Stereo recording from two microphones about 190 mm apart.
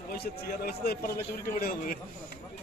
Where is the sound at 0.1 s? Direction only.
55° left (ahead or behind).